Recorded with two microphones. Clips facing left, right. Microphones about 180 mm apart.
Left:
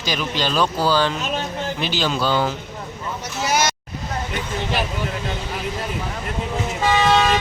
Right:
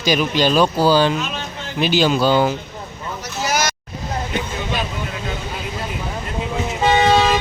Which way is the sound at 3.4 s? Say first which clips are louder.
Left 1 dB; 25° left (ahead or behind).